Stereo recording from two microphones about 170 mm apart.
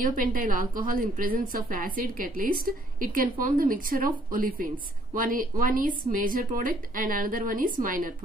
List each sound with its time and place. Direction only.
0.0 s a woman's voice: 55° right (ahead or behind)